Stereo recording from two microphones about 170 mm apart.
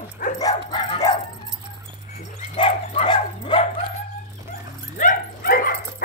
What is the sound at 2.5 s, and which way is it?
Bow-wow, 30° left (ahead or behind).